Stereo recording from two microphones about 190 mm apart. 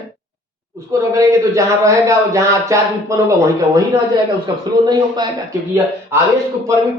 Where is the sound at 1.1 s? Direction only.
15° right (ahead or behind).